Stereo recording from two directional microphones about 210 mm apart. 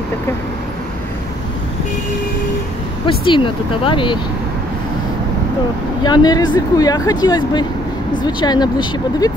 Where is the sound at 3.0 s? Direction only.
25° left (ahead or behind).